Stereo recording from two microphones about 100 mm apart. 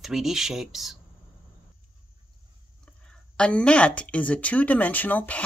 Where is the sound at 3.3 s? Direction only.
10° left (ahead or behind).